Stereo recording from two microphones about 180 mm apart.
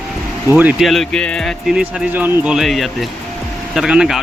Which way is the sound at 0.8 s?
Centre (ahead or behind).